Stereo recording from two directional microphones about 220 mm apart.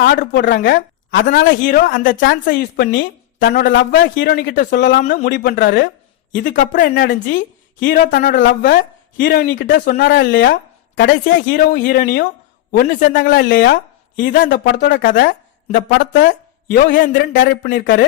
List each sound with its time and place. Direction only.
0.0 s speech: 45° left (ahead or behind)
3.9 s speech: 40° left (ahead or behind)
8.4 s speech: 55° left (ahead or behind)
13.2 s speech: 55° left (ahead or behind)
16.7 s speech: 40° left (ahead or behind)